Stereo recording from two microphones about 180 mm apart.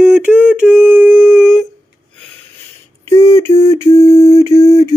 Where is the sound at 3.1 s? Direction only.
15° left (ahead or behind).